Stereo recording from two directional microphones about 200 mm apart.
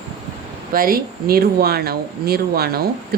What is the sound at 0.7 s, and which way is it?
Speech, 45° right (ahead or behind).